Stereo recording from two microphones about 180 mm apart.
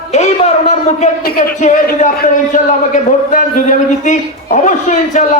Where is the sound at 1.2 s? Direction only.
55° left (ahead or behind).